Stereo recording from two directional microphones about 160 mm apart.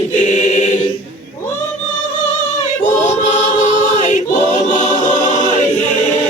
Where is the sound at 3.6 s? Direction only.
50° left (ahead or behind).